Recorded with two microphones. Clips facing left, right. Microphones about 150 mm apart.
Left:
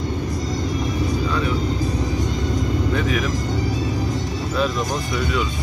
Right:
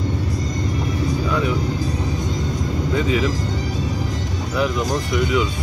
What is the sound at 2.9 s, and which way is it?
Speech, 20° right (ahead or behind).